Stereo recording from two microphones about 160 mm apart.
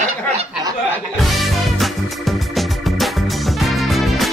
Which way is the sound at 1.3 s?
Centre (ahead or behind).